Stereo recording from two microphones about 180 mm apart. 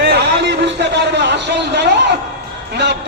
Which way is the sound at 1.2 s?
75° right (ahead or behind).